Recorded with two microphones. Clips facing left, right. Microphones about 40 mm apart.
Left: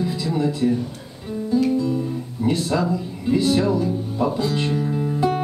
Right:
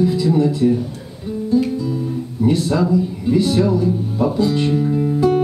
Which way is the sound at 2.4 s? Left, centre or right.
Centre.